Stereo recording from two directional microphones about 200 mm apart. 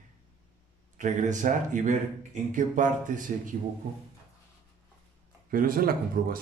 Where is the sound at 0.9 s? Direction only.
40° right (ahead or behind).